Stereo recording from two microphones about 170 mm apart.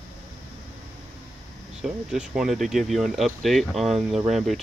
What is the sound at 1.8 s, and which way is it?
Speech, 5° right (ahead or behind).